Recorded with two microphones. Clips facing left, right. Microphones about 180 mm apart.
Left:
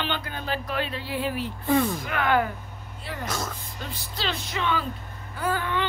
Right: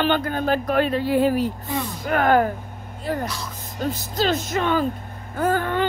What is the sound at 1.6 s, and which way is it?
Speech, 45° left (ahead or behind).